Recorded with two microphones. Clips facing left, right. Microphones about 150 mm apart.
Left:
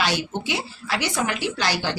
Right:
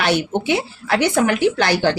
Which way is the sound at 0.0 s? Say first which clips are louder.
Right 6 dB; 60° right (ahead or behind).